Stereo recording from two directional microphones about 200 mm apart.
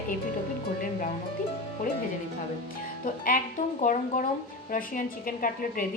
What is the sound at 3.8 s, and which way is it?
Speech, 40° left (ahead or behind).